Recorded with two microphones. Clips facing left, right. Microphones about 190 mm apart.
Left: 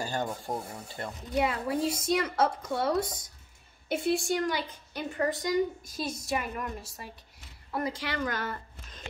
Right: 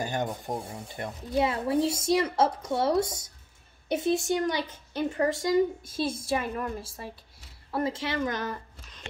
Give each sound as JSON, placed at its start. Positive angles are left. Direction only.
{"t": 0.0, "sound": "a woman's voice", "side_deg": -20}